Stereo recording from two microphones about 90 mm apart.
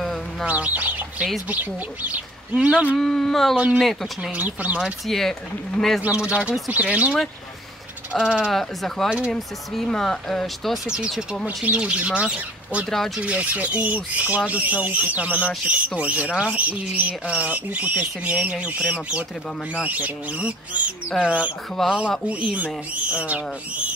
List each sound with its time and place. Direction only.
0.0 s bird: 5° left (ahead or behind)
0.5 s speech: 15° right (ahead or behind)
3.0 s speech: 5° left (ahead or behind)
3.5 s speech: 15° right (ahead or behind)
5.0 s speech: 5° left (ahead or behind)
6.0 s speech: 15° right (ahead or behind)
8.5 s speech: 5° left (ahead or behind); by 21.5 s 15° right (ahead or behind)
21.8 s speech: centre (ahead or behind)
22.5 s speech: 15° right (ahead or behind)